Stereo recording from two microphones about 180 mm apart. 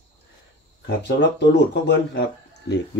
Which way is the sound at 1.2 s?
70° left (ahead or behind).